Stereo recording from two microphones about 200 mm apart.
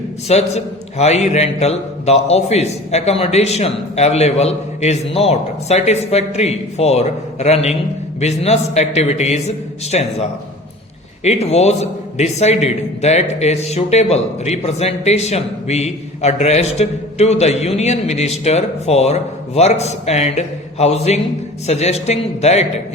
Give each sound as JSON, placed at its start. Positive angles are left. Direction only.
{"t": 0.3, "sound": "a man's voice", "side_deg": 35}